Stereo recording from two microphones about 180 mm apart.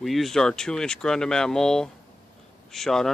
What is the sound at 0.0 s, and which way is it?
Speech, centre (ahead or behind).